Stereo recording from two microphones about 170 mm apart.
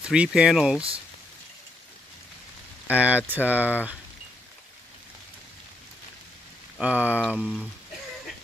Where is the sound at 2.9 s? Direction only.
10° right (ahead or behind).